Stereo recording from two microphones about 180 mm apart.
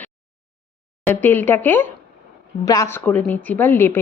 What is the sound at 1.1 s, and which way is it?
A woman's voice, 10° left (ahead or behind).